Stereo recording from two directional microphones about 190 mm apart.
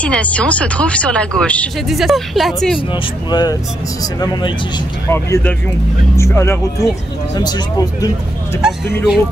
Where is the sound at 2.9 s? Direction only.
25° left (ahead or behind).